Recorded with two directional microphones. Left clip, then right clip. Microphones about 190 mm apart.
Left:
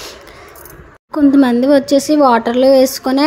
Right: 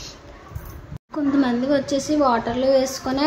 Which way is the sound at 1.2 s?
45° left (ahead or behind).